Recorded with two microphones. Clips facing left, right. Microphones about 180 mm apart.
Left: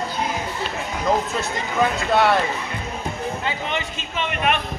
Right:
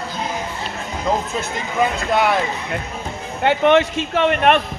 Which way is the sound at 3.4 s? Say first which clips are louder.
Right 12 dB; 75° right (ahead or behind).